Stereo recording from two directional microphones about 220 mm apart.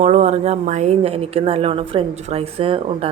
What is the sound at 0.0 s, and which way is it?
A woman's voice, 30° right (ahead or behind).